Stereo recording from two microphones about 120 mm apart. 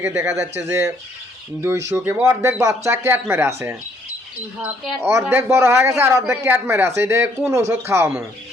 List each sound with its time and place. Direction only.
0.0 s speech: 25° right (ahead or behind)
4.9 s speech: 20° right (ahead or behind)